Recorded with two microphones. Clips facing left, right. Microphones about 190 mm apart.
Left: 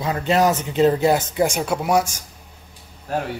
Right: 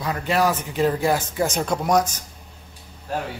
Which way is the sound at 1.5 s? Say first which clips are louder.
Left 1 dB; 5° left (ahead or behind).